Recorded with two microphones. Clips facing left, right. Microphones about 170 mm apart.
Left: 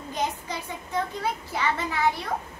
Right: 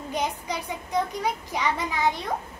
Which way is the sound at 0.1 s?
15° right (ahead or behind).